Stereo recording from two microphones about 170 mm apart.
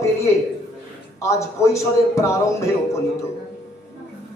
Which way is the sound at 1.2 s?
15° left (ahead or behind).